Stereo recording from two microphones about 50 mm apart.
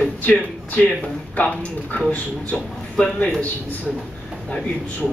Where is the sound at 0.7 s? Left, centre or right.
Left.